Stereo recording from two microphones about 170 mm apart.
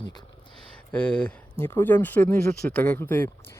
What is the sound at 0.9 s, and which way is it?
Speech, 5° left (ahead or behind).